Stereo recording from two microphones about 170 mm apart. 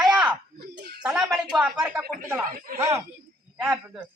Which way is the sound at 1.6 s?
5° right (ahead or behind).